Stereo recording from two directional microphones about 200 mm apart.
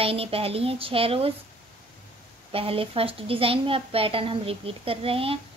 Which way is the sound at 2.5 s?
30° right (ahead or behind).